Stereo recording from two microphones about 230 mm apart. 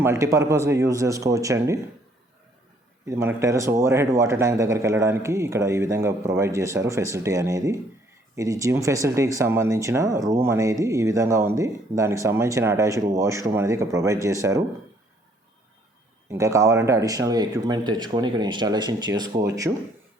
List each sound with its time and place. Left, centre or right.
0.0 s speech: centre
3.1 s speech: centre
16.3 s speech: centre